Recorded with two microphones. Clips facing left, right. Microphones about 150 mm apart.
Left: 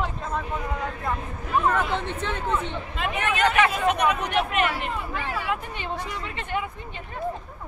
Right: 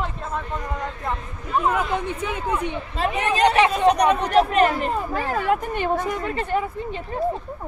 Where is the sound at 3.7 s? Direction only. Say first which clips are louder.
Right 5 dB; 35° right (ahead or behind).